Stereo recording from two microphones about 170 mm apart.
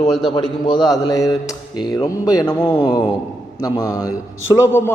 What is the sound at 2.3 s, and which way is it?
A man's voice, 20° left (ahead or behind).